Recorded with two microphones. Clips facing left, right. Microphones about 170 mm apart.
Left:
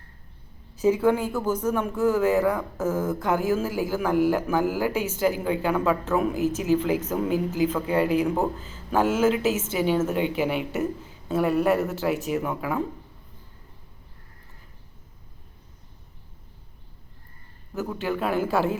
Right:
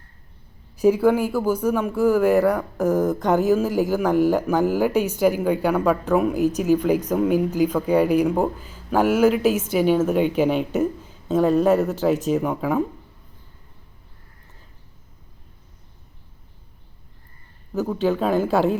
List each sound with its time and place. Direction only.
0.8 s speech: 10° right (ahead or behind)
11.3 s a man's voice: 10° left (ahead or behind)
11.7 s speech: 15° right (ahead or behind)
17.7 s speech: 20° right (ahead or behind)